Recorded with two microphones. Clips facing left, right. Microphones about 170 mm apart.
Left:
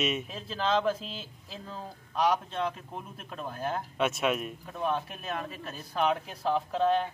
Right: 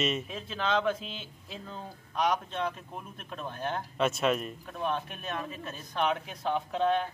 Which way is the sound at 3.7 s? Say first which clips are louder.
Right 1 dB; 5° left (ahead or behind).